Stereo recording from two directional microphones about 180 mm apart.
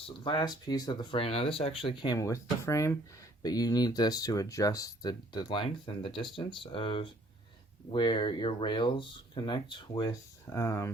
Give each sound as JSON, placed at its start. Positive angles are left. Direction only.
{"t": 0.3, "sound": "speech", "side_deg": 25}